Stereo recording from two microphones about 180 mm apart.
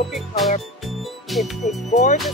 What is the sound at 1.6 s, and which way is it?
Speech, 40° left (ahead or behind).